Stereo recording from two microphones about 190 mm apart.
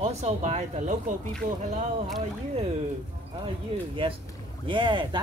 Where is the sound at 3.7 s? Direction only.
30° right (ahead or behind).